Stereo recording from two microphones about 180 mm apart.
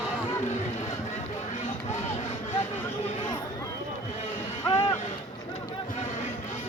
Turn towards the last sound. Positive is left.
turn(degrees=30)  # may be behind; listen again after turning